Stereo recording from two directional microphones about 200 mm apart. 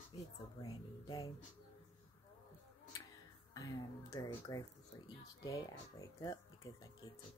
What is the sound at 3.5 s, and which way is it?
Speech, 15° left (ahead or behind).